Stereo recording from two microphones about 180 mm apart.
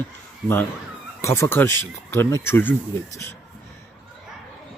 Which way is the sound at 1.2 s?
15° left (ahead or behind).